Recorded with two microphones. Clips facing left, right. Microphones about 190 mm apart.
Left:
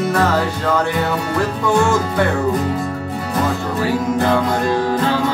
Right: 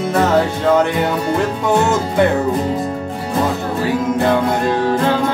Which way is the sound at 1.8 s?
20° right (ahead or behind).